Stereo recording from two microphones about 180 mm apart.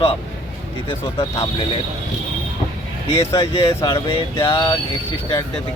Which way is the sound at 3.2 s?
15° left (ahead or behind).